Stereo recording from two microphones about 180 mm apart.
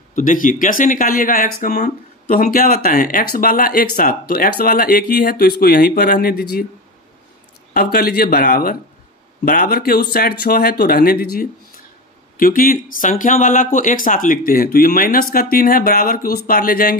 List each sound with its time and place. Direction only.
0.1 s speech: 50° left (ahead or behind)
7.7 s speech: 55° left (ahead or behind)